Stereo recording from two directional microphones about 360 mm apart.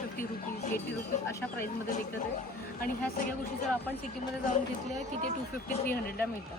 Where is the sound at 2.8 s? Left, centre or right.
Left.